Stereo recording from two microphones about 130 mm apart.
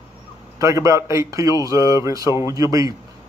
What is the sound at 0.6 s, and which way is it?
Speech, 25° right (ahead or behind).